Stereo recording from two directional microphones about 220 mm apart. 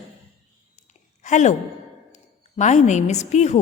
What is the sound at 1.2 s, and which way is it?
A woman's voice, 35° left (ahead or behind).